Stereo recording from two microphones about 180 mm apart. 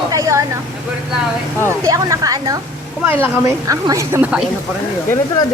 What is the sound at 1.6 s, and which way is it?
A woman's voice, 15° right (ahead or behind).